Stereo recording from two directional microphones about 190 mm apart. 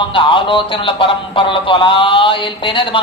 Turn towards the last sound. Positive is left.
turn(degrees=25)  # may be behind; listen again after turning